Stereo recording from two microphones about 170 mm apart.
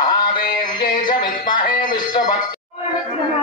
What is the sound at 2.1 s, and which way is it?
Music, 50° left (ahead or behind).